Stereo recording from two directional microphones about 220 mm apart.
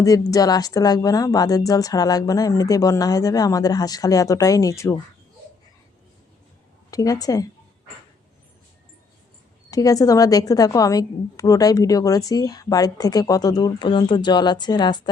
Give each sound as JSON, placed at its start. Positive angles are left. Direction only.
{"t": 0.0, "sound": "a woman's voice", "side_deg": 15}
{"t": 6.9, "sound": "a woman's voice", "side_deg": 15}
{"t": 9.6, "sound": "a woman's voice", "side_deg": 15}